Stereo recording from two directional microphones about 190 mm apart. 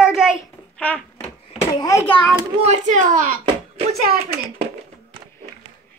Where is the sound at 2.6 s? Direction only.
35° right (ahead or behind).